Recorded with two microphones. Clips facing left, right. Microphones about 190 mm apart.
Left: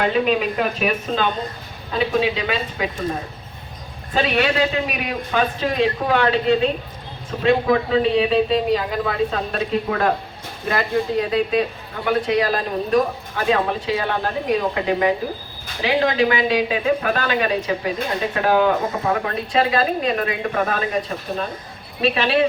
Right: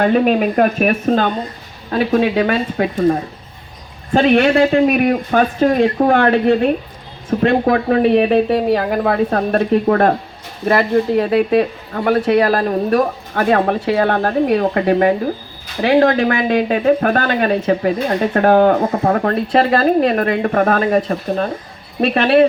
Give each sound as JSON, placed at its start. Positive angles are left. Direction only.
{"t": 0.0, "sound": "speech", "side_deg": -50}
{"t": 4.1, "sound": "speech", "side_deg": -50}